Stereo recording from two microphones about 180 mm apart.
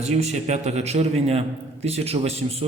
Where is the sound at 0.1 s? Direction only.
40° right (ahead or behind).